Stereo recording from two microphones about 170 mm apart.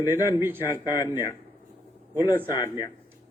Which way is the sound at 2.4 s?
20° left (ahead or behind).